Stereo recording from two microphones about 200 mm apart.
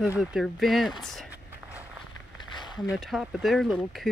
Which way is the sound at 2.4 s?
20° left (ahead or behind).